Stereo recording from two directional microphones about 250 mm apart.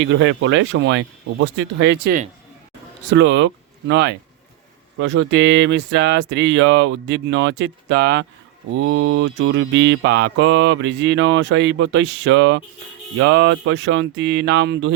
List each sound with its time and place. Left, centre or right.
0.0 s mantra: right
3.1 s speech: right
4.9 s mantra: right